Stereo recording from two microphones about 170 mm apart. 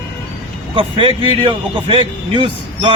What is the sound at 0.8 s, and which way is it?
A man's voice, 30° right (ahead or behind).